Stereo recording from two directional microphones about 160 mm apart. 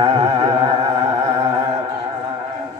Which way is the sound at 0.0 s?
30° right (ahead or behind).